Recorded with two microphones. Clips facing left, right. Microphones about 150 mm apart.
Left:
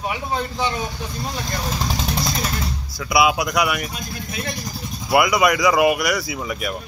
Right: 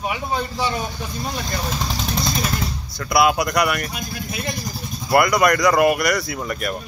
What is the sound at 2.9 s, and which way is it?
A man's voice, centre (ahead or behind).